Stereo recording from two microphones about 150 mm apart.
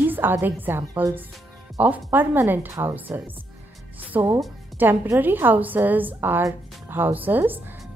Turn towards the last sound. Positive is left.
turn(degrees=-10)  # may be behind; listen again after turning